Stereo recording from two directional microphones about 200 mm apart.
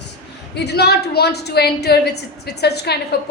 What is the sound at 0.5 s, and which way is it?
A woman's voice, 55° left (ahead or behind).